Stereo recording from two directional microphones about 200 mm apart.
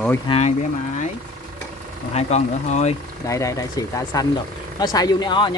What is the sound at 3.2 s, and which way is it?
Speech, 15° left (ahead or behind).